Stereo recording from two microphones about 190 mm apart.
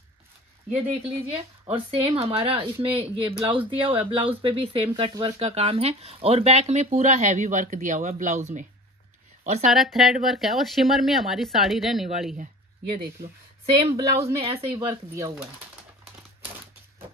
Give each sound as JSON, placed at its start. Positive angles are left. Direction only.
{"t": 1.7, "sound": "speech", "side_deg": -30}
{"t": 9.7, "sound": "speech", "side_deg": 0}
{"t": 13.7, "sound": "speech", "side_deg": -20}